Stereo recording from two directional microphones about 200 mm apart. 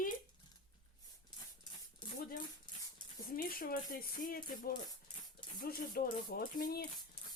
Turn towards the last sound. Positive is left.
turn(degrees=50)  # may be behind; listen again after turning